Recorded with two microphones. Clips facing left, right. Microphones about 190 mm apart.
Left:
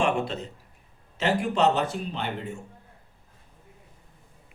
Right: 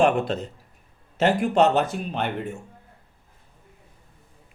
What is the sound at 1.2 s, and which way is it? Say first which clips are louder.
Speech: right 4 dB; 50° right (ahead or behind).